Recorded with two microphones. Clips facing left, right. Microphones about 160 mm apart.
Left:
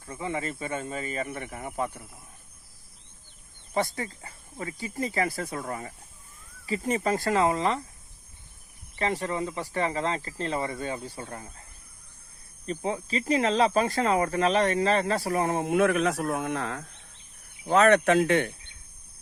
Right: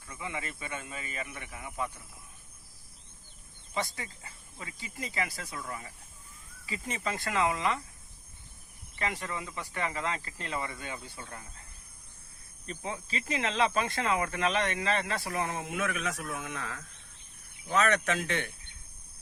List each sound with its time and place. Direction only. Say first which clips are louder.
0.0 s speech: left 7 dB; 40° left (ahead or behind)
3.8 s speech: left 7 dB; 45° left (ahead or behind)
9.0 s speech: left 7 dB; 35° left (ahead or behind)
12.6 s speech: left 8 dB; 35° left (ahead or behind)